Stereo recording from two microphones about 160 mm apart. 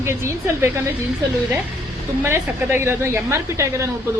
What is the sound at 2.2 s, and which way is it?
A woman's voice, 15° right (ahead or behind).